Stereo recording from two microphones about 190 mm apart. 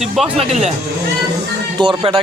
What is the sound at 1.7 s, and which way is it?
Speech, 25° right (ahead or behind).